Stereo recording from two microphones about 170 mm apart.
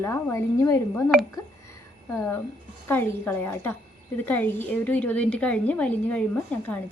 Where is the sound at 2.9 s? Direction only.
10° left (ahead or behind).